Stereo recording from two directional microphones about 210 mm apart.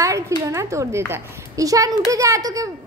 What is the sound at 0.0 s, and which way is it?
Speech, 15° right (ahead or behind).